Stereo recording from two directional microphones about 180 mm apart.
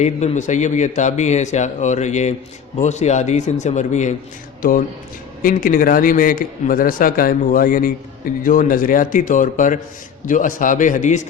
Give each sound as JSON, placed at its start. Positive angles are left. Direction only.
{"t": 0.0, "sound": "speech", "side_deg": 40}
{"t": 5.4, "sound": "a man's voice", "side_deg": 50}